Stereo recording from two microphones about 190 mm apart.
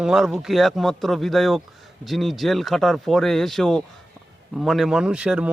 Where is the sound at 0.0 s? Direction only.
Centre (ahead or behind).